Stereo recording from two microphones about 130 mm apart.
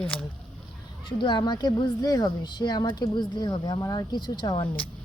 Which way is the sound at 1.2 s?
35° left (ahead or behind).